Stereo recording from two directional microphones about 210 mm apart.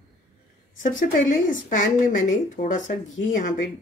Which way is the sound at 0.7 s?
40° left (ahead or behind).